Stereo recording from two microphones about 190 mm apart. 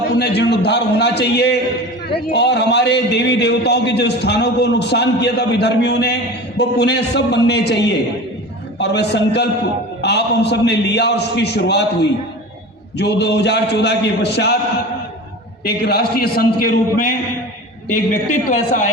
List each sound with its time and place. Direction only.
0.2 s a man's voice: 60° left (ahead or behind)
13.0 s a man's voice: 60° left (ahead or behind)
15.6 s a man's voice: 55° left (ahead or behind)